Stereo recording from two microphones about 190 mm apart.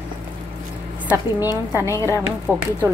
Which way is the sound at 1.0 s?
10° right (ahead or behind).